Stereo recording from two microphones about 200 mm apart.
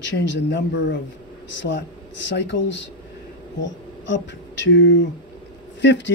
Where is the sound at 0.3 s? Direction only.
60° left (ahead or behind).